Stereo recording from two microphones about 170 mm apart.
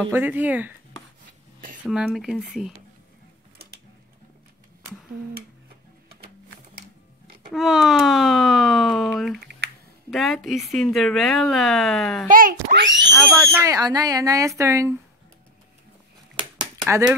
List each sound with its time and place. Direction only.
0.1 s speech: 10° right (ahead or behind)
1.9 s a woman's voice: centre (ahead or behind)
7.5 s a woman's voice: centre (ahead or behind)
9.4 s finger snapping: 75° right (ahead or behind)
10.1 s a woman's voice: centre (ahead or behind)
12.3 s a child's voice: 55° right (ahead or behind)
12.7 s speech: 90° right
13.4 s speech: 15° right (ahead or behind)